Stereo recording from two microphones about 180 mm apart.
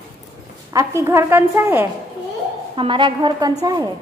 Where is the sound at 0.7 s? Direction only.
15° right (ahead or behind).